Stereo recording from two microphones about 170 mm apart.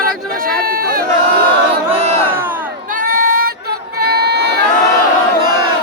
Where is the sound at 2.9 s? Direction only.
55° right (ahead or behind); by 4.6 s 75° right (ahead or behind).